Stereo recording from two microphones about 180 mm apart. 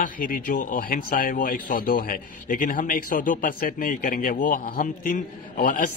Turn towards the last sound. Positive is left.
turn(degrees=50)  # may be behind; listen again after turning